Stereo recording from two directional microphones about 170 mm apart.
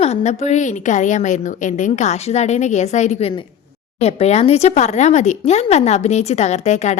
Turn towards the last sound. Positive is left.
turn(degrees=40)  # may be behind; listen again after turning